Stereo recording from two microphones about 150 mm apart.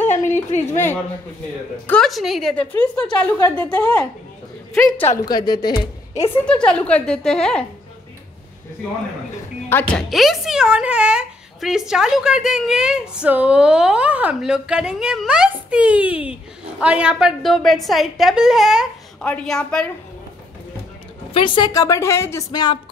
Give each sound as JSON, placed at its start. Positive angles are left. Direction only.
{"t": 0.6, "sound": "a woman's voice", "side_deg": 15}
{"t": 1.9, "sound": "a woman's voice", "side_deg": 5}
{"t": 5.0, "sound": "a woman's voice", "side_deg": 25}
{"t": 6.4, "sound": "a woman's voice", "side_deg": 5}
{"t": 9.7, "sound": "a woman's voice", "side_deg": 10}
{"t": 10.0, "sound": "a woman's voice", "side_deg": 0}
{"t": 21.3, "sound": "a woman's voice", "side_deg": 35}